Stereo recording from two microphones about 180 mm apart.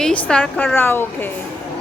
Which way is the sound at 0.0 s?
5° left (ahead or behind).